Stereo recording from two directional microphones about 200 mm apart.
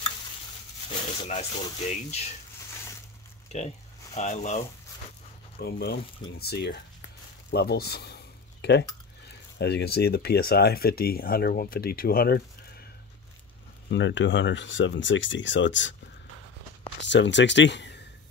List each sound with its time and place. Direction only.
0.8 s speech: 30° left (ahead or behind)
3.5 s speech: 35° left (ahead or behind)
5.6 s speech: 55° left (ahead or behind)
7.5 s a sound: 50° left (ahead or behind)
9.6 s speech: 55° left (ahead or behind)
13.8 s speech: 65° left (ahead or behind)
17.1 s speech: 65° left (ahead or behind)